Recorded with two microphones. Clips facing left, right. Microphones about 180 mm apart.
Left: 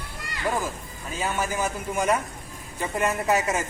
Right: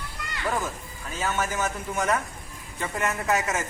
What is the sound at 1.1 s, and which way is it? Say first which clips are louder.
Speech: left 1 dB; 10° left (ahead or behind).